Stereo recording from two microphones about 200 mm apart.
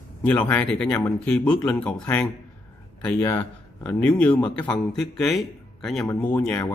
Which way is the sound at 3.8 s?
5° left (ahead or behind).